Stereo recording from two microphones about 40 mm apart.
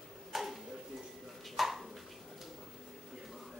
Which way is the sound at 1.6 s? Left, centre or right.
Centre.